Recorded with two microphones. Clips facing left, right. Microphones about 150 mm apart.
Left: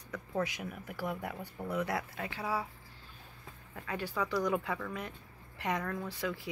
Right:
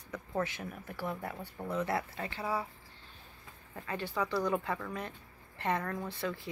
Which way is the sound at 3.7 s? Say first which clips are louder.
Right 1 dB; 10° left (ahead or behind).